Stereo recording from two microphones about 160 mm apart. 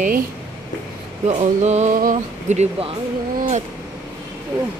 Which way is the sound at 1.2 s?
45° right (ahead or behind).